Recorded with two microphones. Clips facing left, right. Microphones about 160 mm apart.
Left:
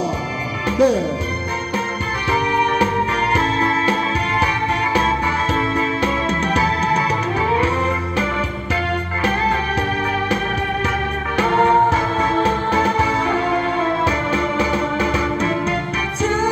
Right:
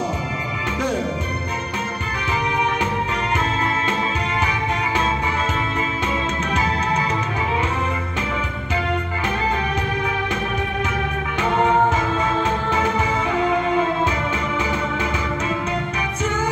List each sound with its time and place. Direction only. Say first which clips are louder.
0.7 s music: left 10 dB; 35° left (ahead or behind)
3.3 s music: left 4 dB; 35° left (ahead or behind)
12.2 s music: left 3 dB; 35° left (ahead or behind)
14.0 s music: left 4 dB; 35° left (ahead or behind)